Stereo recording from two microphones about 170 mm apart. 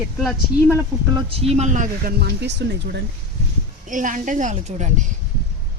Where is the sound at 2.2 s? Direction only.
75° right (ahead or behind).